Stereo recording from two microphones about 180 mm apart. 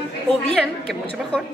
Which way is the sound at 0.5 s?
Centre (ahead or behind).